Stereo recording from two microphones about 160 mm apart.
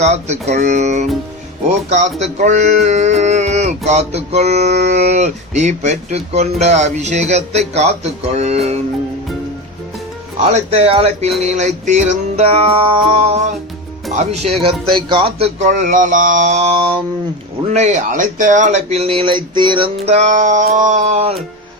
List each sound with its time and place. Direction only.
0.0 s speech: 45° right (ahead or behind)
10.5 s speech: 40° right (ahead or behind)
17.7 s speech: 45° right (ahead or behind)